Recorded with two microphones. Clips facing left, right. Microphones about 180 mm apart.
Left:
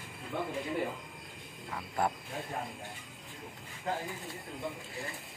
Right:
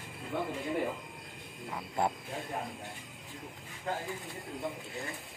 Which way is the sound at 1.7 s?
20° right (ahead or behind).